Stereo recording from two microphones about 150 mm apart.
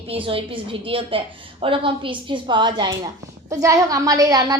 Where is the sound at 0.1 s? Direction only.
35° right (ahead or behind).